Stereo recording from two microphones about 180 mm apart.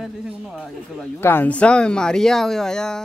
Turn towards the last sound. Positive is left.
turn(degrees=5)  # may be behind; listen again after turning